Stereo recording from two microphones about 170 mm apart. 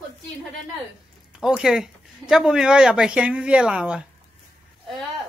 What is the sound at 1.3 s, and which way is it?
Speech, 5° right (ahead or behind).